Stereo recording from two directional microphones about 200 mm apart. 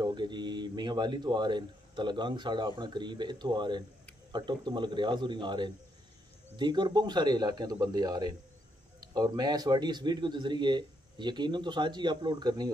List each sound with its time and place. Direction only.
0.0 s speech: 20° right (ahead or behind)